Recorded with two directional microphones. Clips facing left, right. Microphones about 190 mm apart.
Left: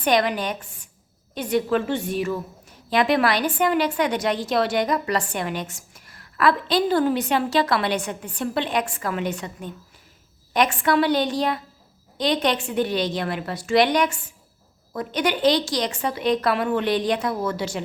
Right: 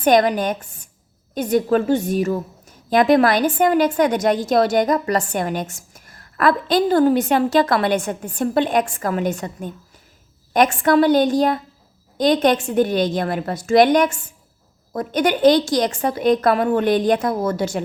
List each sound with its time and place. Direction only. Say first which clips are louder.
0.0 s a woman's voice: right 6 dB; 45° right (ahead or behind)